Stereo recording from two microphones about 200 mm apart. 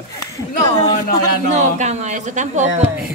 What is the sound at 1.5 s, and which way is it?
Speech, 35° right (ahead or behind).